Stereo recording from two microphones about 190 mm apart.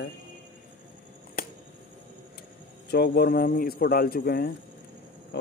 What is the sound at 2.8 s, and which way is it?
Speech, 60° left (ahead or behind).